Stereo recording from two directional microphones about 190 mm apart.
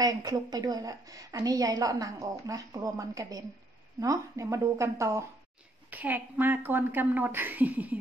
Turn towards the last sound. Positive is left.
turn(degrees=-10)  # may be behind; listen again after turning